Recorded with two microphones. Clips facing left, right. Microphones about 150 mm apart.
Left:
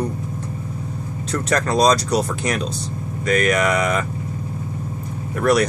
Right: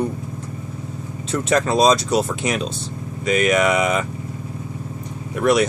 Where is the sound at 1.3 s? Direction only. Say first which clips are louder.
Right 2 dB; 5° right (ahead or behind).